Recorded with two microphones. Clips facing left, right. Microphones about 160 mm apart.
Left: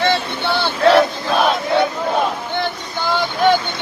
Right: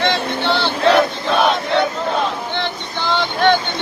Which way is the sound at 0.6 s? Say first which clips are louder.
Left 3 dB; centre (ahead or behind).